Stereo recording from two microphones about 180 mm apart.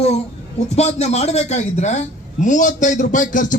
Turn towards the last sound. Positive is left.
turn(degrees=45)  # may be behind; listen again after turning